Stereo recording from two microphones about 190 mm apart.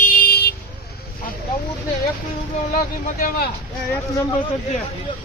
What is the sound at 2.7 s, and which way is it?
Speech, 50° left (ahead or behind).